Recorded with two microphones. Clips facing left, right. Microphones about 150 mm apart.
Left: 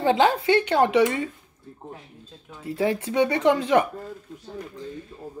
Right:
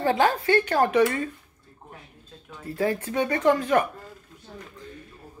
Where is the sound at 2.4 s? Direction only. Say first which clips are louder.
Left 2 dB; 20° left (ahead or behind).